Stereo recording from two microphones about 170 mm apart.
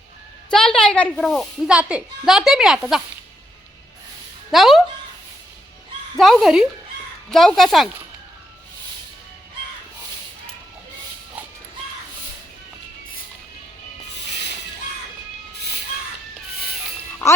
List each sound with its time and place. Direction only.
0.5 s a woman's voice: 5° left (ahead or behind)
4.5 s a woman's voice: centre (ahead or behind)
6.1 s a woman's voice: centre (ahead or behind)